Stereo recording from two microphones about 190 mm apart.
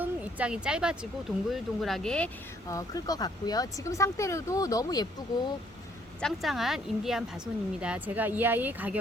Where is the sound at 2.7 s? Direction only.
20° left (ahead or behind).